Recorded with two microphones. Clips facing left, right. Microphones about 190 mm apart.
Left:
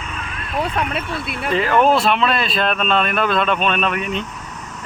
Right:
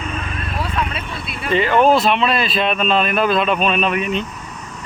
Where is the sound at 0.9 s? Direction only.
55° left (ahead or behind).